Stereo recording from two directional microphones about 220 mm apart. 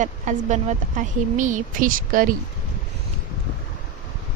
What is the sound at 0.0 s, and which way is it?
A woman's voice, 35° right (ahead or behind).